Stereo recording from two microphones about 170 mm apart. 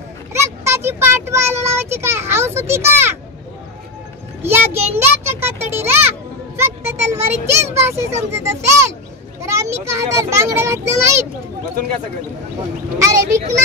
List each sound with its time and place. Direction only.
0.3 s a child's voice: 15° right (ahead or behind)
4.4 s a sound: 15° right (ahead or behind)
5.2 s a child's voice: 15° right (ahead or behind)
13.0 s a child's voice: 15° right (ahead or behind)